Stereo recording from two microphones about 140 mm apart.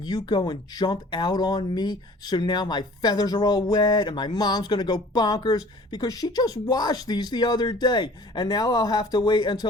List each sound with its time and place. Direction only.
0.0 s speech: 30° left (ahead or behind)